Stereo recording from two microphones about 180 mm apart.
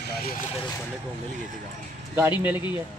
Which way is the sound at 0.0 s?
55° left (ahead or behind).